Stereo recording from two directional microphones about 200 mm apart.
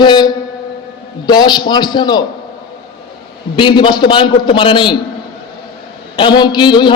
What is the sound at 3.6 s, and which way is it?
A man's voice, 25° left (ahead or behind).